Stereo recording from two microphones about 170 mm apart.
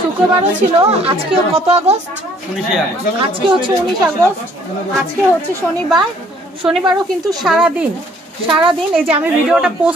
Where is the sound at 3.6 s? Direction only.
25° right (ahead or behind).